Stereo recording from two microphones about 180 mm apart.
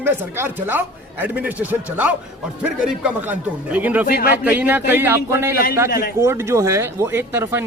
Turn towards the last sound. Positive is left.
turn(degrees=-10)  # may be behind; listen again after turning